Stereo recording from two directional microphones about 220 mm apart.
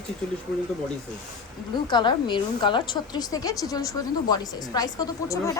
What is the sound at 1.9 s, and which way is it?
A woman's voice, 20° left (ahead or behind).